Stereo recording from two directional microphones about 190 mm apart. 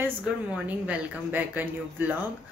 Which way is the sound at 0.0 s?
10° right (ahead or behind).